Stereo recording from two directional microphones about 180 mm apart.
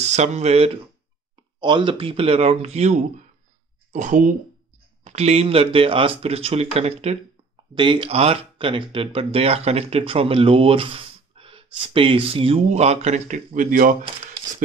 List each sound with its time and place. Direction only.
0.0 s speech: 40° right (ahead or behind)
1.6 s speech: 25° right (ahead or behind); by 13.9 s 50° right (ahead or behind)